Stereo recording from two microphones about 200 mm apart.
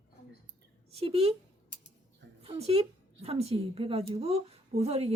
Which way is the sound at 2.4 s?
30° right (ahead or behind).